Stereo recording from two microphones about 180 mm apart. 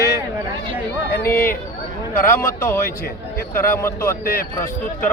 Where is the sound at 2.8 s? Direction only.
60° left (ahead or behind).